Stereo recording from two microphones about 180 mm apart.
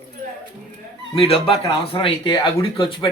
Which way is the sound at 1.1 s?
30° left (ahead or behind).